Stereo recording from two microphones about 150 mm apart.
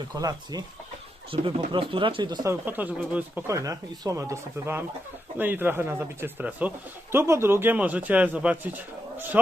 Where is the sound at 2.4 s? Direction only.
15° right (ahead or behind).